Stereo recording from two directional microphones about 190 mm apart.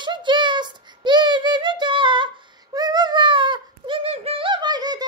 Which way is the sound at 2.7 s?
20° right (ahead or behind).